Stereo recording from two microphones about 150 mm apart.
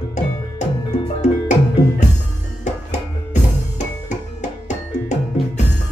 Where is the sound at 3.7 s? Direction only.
55° left (ahead or behind).